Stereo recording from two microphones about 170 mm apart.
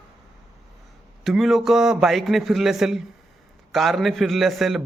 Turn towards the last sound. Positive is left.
turn(degrees=0)  # may be behind; listen again after turning